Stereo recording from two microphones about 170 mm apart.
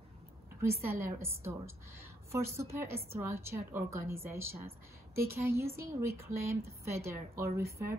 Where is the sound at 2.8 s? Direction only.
15° right (ahead or behind).